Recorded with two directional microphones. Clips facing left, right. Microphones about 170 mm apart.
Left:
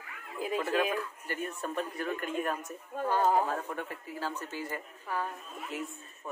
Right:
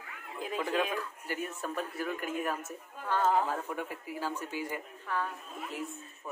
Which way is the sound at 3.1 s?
10° left (ahead or behind).